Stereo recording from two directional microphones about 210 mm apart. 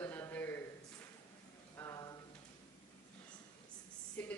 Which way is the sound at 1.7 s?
15° left (ahead or behind).